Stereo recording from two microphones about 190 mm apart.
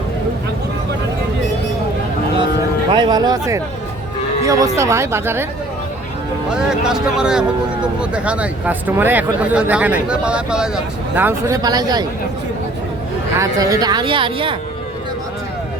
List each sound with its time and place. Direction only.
2.9 s speech: 20° right (ahead or behind)
6.5 s speech: 5° right (ahead or behind); by 12.0 s 20° right (ahead or behind)
13.3 s speech: 15° right (ahead or behind)